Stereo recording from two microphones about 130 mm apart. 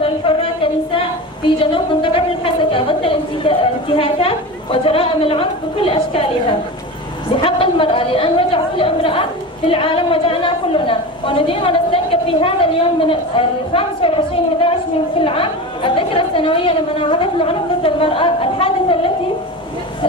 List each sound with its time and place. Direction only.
1.6 s a sound: 40° left (ahead or behind)
4.8 s a woman's voice: 45° left (ahead or behind)
7.3 s a woman's voice: 45° left (ahead or behind)